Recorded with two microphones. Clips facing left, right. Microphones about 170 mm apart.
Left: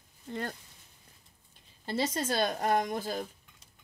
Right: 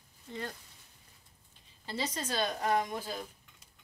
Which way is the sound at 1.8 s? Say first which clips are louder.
Left 6 dB; 50° left (ahead or behind).